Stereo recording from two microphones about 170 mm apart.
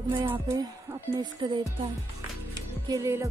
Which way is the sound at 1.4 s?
25° right (ahead or behind).